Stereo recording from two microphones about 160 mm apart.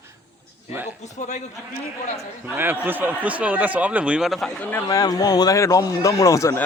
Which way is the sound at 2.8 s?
10° right (ahead or behind).